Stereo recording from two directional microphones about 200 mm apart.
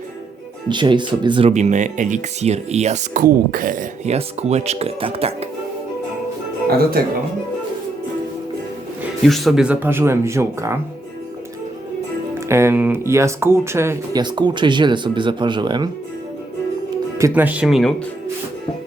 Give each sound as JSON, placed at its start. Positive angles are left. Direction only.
{"t": 0.7, "sound": "speech", "side_deg": -25}
{"t": 9.2, "sound": "speech", "side_deg": 0}
{"t": 12.5, "sound": "speech", "side_deg": -15}
{"t": 17.2, "sound": "speech", "side_deg": -10}